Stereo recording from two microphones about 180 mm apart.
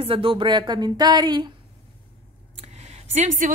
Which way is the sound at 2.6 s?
35° right (ahead or behind).